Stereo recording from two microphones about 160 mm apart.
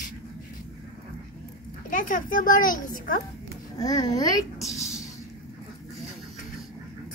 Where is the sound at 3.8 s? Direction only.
25° left (ahead or behind).